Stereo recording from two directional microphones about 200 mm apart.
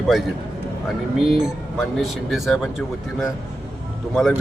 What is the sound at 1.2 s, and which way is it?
Speech, centre (ahead or behind).